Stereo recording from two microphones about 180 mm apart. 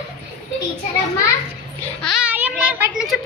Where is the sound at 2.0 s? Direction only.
5° right (ahead or behind).